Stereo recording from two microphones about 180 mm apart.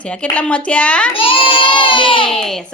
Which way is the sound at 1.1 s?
30° left (ahead or behind).